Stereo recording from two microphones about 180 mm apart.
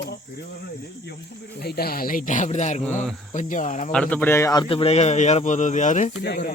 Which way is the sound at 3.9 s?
10° left (ahead or behind).